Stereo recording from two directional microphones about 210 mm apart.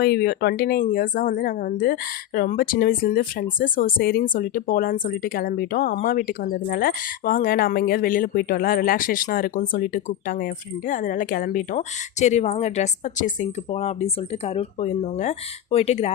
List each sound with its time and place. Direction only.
0.0 s speech: 50° left (ahead or behind); by 16.1 s 30° left (ahead or behind)